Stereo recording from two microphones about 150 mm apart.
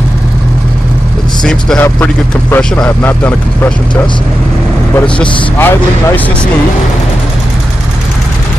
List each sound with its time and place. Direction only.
1.4 s speech: 5° left (ahead or behind)